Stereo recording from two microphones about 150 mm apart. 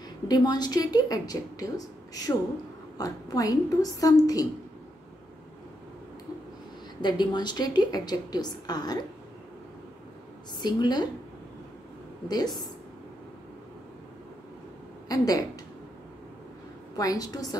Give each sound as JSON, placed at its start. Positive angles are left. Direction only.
{"t": 0.3, "sound": "a woman's voice", "side_deg": 25}
{"t": 3.0, "sound": "a woman's voice", "side_deg": 25}
{"t": 7.0, "sound": "a woman's voice", "side_deg": 30}
{"t": 10.6, "sound": "a woman's voice", "side_deg": 25}
{"t": 12.3, "sound": "a woman's voice", "side_deg": 25}
{"t": 15.0, "sound": "a woman's voice", "side_deg": 25}
{"t": 16.9, "sound": "a woman's voice", "side_deg": 25}